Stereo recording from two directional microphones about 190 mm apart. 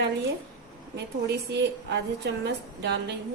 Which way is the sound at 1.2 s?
65° right (ahead or behind).